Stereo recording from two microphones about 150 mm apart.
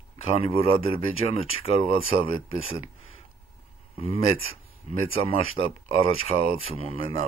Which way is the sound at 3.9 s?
40° left (ahead or behind).